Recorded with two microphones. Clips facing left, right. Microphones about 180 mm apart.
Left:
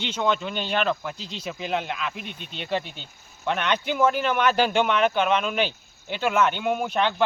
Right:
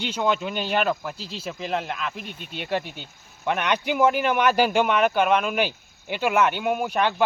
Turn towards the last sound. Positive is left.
turn(degrees=-10)  # may be behind; listen again after turning